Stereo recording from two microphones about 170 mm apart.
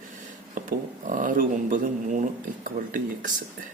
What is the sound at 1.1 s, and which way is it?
Speech, 50° right (ahead or behind).